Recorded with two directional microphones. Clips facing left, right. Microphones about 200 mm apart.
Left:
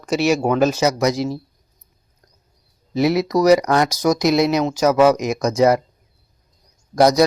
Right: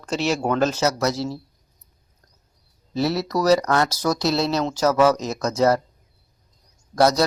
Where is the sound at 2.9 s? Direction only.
15° left (ahead or behind).